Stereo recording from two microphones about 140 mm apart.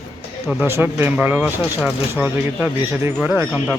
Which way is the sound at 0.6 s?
15° right (ahead or behind).